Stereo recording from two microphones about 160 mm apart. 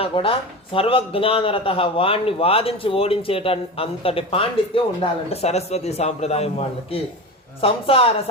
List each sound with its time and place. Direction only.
0.0 s speech: 35° left (ahead or behind)